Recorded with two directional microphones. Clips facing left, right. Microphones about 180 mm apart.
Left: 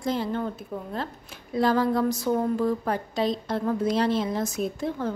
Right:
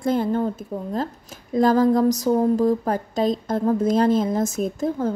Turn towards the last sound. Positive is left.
turn(degrees=-40)  # may be behind; listen again after turning